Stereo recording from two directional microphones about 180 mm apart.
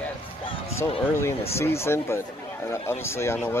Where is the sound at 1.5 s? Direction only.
15° left (ahead or behind).